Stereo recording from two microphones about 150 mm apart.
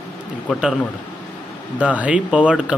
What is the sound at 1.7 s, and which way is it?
Speech, 10° right (ahead or behind).